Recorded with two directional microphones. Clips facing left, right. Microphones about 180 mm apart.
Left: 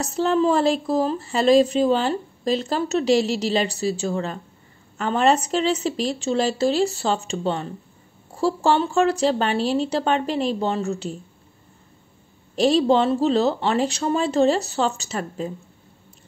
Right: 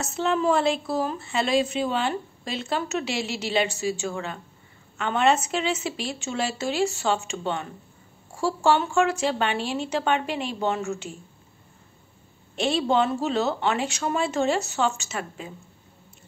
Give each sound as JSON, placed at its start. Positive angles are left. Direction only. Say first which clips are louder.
{"t": 0.0, "sound": "speech", "louder": "left 4 dB", "side_deg": 35}
{"t": 12.5, "sound": "speech", "louder": "left 5 dB", "side_deg": 35}